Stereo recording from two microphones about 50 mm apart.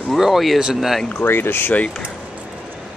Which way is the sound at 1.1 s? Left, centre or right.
Left.